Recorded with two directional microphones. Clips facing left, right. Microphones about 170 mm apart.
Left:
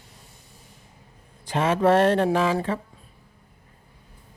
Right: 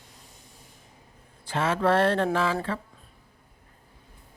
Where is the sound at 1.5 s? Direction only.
15° left (ahead or behind).